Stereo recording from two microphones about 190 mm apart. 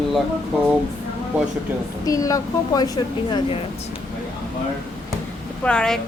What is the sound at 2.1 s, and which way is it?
A woman's voice, 20° left (ahead or behind).